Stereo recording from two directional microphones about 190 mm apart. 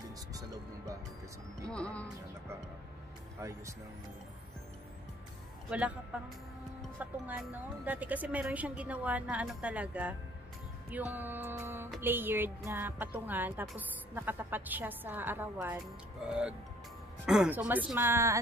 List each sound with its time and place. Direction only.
0.3 s music: 20° right (ahead or behind)
1.7 s speech: 5° left (ahead or behind)
5.7 s a woman's voice: 5° right (ahead or behind)
17.3 s a woman's voice: 5° right (ahead or behind)